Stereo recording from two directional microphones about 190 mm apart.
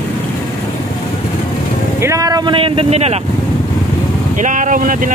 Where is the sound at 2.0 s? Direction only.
15° right (ahead or behind); by 3.2 s 35° right (ahead or behind).